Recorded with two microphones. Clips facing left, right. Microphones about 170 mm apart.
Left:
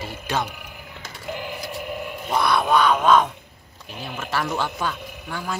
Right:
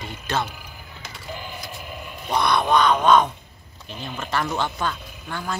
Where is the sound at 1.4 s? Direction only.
65° left (ahead or behind).